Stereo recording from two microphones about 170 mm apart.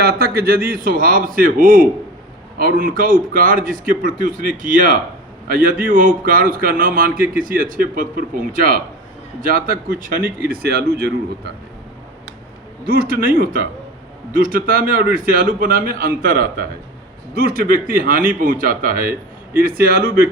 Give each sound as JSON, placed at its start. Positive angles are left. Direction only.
{"t": 0.0, "sound": "a man's voice", "side_deg": -65}
{"t": 10.5, "sound": "speech", "side_deg": -65}
{"t": 12.8, "sound": "a man's voice", "side_deg": -60}